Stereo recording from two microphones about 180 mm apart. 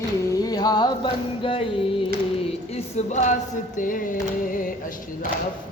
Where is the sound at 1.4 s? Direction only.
30° left (ahead or behind).